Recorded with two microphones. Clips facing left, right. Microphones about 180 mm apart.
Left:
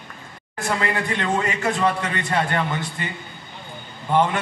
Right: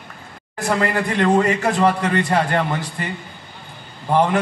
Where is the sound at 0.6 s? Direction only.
35° right (ahead or behind).